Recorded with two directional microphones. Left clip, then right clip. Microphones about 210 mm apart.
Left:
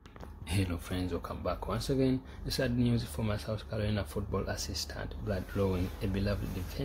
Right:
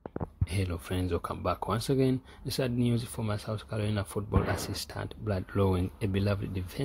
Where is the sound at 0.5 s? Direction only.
35° right (ahead or behind).